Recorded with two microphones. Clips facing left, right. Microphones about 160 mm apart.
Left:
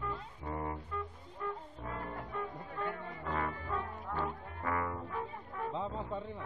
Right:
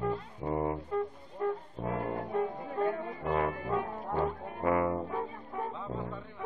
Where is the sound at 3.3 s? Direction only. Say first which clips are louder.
Right 7 dB; 20° right (ahead or behind).